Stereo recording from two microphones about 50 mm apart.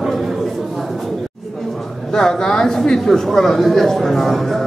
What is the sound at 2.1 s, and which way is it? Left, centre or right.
Speech, centre.